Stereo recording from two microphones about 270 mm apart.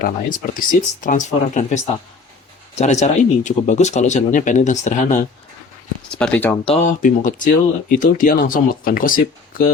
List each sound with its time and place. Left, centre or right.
0.0 s speech: left
6.1 s speech: centre
6.7 s speech: left